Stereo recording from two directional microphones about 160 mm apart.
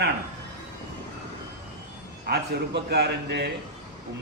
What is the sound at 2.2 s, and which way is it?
A man's voice, 90° right.